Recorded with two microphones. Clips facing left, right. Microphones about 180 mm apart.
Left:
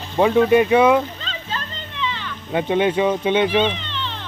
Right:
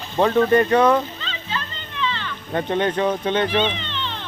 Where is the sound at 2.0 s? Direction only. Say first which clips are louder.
Right 1 dB; 10° left (ahead or behind).